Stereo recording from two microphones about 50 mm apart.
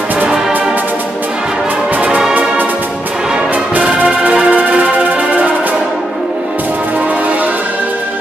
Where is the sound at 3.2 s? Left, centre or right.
Centre.